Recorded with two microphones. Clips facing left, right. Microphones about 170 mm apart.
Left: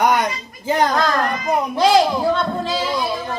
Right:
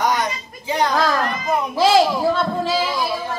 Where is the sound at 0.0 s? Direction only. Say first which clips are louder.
Left 3 dB; 60° left (ahead or behind).